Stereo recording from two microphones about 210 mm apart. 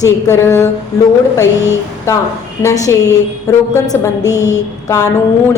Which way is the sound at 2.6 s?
15° left (ahead or behind).